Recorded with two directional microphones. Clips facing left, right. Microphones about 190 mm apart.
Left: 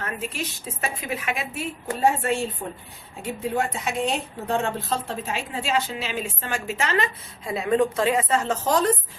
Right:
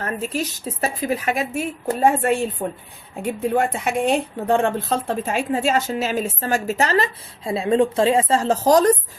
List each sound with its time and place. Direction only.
0.0 s a woman's voice: 40° right (ahead or behind)